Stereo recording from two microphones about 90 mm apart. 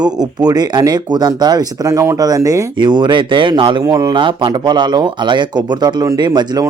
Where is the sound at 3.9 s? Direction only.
55° right (ahead or behind).